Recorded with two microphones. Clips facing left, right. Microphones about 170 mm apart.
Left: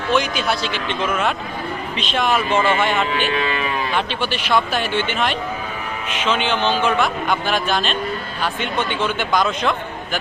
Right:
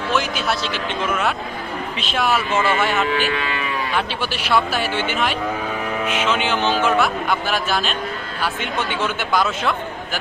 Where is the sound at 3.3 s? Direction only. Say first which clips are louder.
Left 3 dB; 25° left (ahead or behind).